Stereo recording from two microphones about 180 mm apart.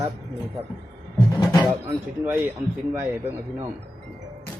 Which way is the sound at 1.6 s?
10° right (ahead or behind).